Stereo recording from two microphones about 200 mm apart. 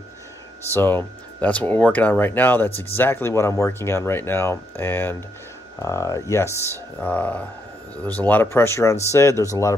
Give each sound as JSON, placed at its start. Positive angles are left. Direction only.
{"t": 0.7, "sound": "speech", "side_deg": 10}